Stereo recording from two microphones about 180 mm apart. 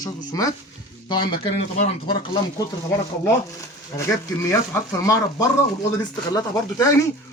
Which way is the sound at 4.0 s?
15° left (ahead or behind).